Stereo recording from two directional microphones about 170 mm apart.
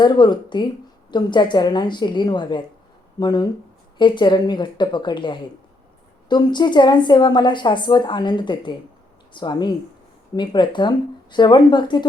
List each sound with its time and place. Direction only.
0.0 s a woman's voice: 25° left (ahead or behind)